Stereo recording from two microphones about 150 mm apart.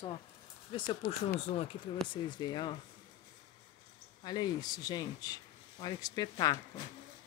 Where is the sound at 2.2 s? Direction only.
30° left (ahead or behind).